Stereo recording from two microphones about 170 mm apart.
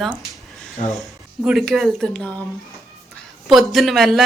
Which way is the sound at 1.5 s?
Centre (ahead or behind).